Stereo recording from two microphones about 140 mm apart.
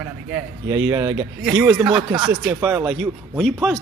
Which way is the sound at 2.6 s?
15° right (ahead or behind).